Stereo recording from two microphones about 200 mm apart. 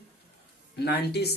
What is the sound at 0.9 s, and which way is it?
Speech, 55° left (ahead or behind).